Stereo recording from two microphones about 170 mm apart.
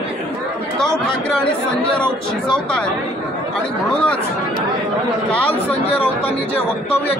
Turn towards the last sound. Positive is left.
turn(degrees=10)  # may be behind; listen again after turning